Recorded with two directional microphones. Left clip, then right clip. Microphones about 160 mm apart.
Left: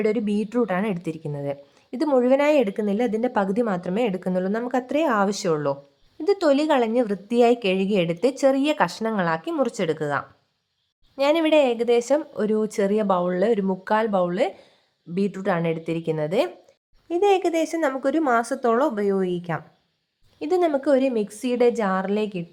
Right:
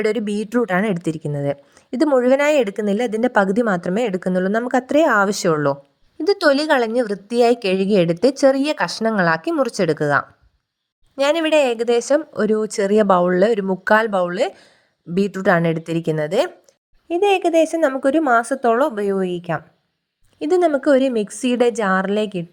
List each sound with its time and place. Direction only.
0.0 s a woman's voice: 40° right (ahead or behind)
17.1 s a woman's voice: 25° right (ahead or behind)